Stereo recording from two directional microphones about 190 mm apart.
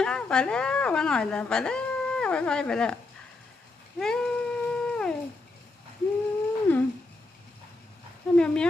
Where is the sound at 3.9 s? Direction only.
5° left (ahead or behind).